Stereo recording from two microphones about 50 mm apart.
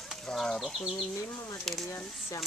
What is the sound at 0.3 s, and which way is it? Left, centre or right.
Bird flight, centre.